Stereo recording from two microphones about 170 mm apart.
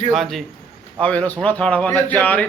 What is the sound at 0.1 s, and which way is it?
A man's voice, centre (ahead or behind).